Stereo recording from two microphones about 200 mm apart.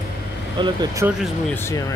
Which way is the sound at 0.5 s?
20° right (ahead or behind).